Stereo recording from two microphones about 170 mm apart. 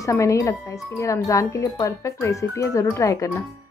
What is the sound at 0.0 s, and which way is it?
Speech, 20° left (ahead or behind).